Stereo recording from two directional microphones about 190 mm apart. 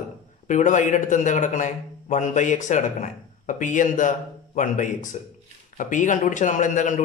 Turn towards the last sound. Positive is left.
turn(degrees=40)  # may be behind; listen again after turning